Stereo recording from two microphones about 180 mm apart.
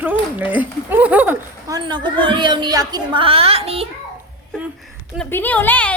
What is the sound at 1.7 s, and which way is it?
A woman's voice, 25° right (ahead or behind).